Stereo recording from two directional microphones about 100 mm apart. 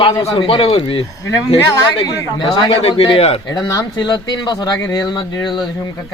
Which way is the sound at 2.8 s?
70° left (ahead or behind).